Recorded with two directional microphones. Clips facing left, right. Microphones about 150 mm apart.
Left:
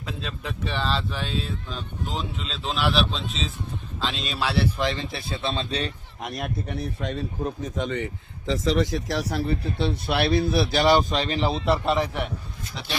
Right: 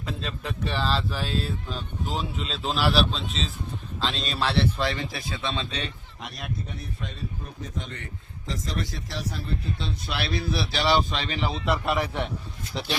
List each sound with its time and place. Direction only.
0.0 s speech: centre (ahead or behind)
4.8 s speech: 20° left (ahead or behind)
5.3 s speech: 35° left (ahead or behind)
6.3 s speech: 60° left (ahead or behind); by 11.8 s 35° left (ahead or behind)
11.8 s speech: 20° left (ahead or behind)